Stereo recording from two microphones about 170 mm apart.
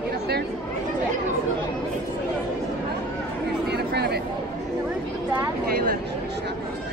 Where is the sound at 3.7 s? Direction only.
75° right (ahead or behind).